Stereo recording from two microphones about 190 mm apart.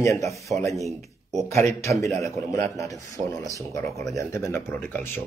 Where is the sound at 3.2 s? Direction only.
30° right (ahead or behind).